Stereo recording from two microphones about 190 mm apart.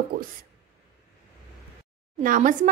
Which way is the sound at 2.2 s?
45° right (ahead or behind).